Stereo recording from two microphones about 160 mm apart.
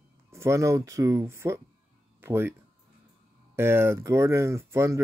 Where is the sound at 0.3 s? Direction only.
20° right (ahead or behind).